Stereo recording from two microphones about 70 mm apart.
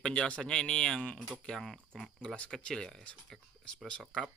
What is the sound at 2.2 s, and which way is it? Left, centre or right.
Speech, centre.